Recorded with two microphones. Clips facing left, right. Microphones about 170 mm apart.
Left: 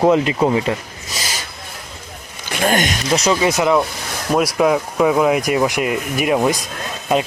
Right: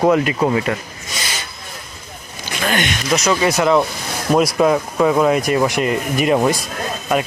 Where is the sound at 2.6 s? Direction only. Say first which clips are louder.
Left 3 dB; 45° left (ahead or behind).